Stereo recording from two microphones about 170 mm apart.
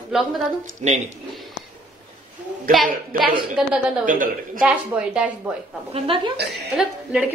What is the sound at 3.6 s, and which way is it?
Speech, 5° right (ahead or behind).